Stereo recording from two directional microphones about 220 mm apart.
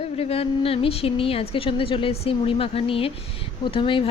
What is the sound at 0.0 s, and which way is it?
A woman's voice, 25° left (ahead or behind).